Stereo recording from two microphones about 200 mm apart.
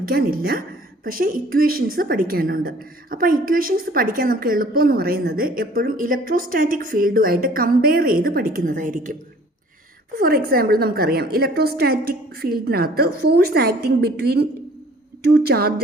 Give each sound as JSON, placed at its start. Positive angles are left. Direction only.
{"t": 0.0, "sound": "a woman's voice", "side_deg": -50}
{"t": 10.2, "sound": "a woman's voice", "side_deg": -45}